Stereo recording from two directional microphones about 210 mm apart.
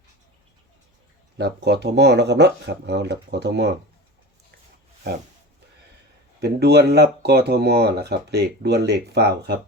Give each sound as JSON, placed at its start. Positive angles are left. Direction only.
{"t": 1.4, "sound": "speech", "side_deg": -50}
{"t": 6.4, "sound": "speech", "side_deg": -50}